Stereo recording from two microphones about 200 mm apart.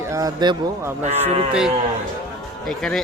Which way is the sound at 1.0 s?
30° right (ahead or behind).